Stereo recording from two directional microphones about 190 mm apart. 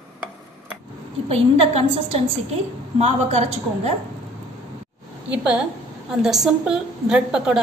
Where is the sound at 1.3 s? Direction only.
30° right (ahead or behind).